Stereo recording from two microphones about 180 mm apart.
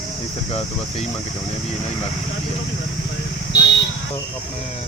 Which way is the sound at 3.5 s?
65° left (ahead or behind).